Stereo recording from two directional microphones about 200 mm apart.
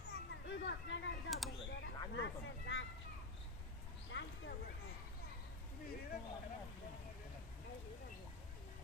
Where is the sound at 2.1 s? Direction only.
65° left (ahead or behind).